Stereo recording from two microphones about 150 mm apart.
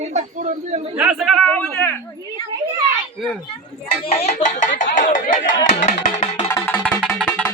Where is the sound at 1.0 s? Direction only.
5° right (ahead or behind).